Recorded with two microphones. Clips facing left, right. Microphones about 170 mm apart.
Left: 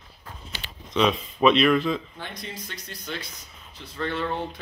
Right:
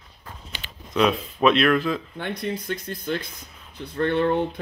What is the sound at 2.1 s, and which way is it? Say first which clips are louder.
Speech: right 9 dB; 60° right (ahead or behind).